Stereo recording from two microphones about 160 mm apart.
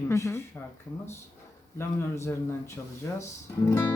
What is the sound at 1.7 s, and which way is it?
Speech, 15° left (ahead or behind).